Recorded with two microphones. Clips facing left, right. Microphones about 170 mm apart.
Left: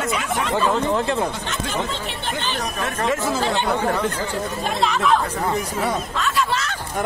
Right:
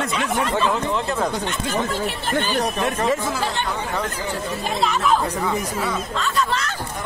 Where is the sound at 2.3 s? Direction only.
40° right (ahead or behind).